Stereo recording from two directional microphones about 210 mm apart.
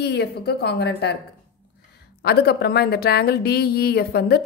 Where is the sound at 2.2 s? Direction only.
50° left (ahead or behind).